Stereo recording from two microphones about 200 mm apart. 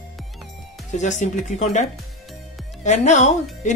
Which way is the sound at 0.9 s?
35° left (ahead or behind).